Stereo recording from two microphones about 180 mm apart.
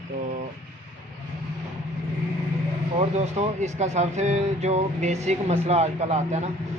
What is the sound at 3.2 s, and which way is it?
A man's voice, 40° right (ahead or behind).